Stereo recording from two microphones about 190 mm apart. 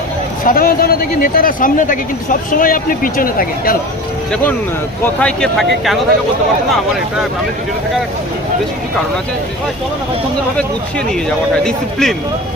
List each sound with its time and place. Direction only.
0.4 s speech: 50° left (ahead or behind)
5.0 s speech: 5° left (ahead or behind)
11.6 s speech: 5° left (ahead or behind)